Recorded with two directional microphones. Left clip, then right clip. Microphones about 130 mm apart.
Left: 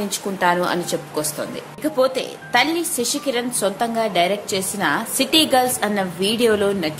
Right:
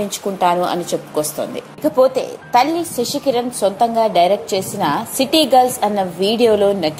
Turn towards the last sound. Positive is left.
turn(degrees=-20)  # may be behind; listen again after turning